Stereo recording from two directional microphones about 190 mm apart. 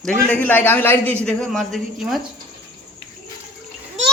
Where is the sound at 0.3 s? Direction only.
10° left (ahead or behind).